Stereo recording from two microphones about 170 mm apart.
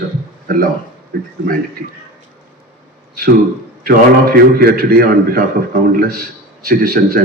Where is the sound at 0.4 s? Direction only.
55° right (ahead or behind).